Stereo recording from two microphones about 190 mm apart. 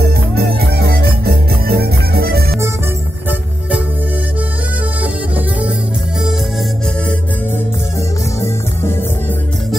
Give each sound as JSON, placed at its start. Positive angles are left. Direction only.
{"t": 0.0, "sound": "music", "side_deg": -55}
{"t": 5.0, "sound": "music", "side_deg": -5}